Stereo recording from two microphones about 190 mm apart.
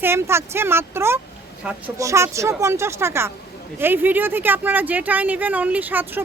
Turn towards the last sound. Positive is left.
turn(degrees=-10)  # may be behind; listen again after turning